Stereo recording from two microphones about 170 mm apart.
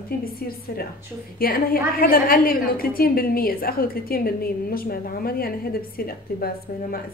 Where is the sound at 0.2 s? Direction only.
60° left (ahead or behind).